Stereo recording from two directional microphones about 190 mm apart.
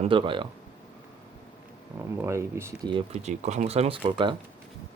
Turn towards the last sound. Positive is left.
turn(degrees=-30)  # may be behind; listen again after turning